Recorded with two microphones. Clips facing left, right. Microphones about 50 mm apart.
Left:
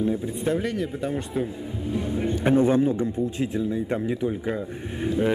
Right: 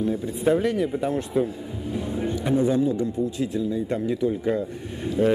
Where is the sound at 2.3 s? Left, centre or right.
Left.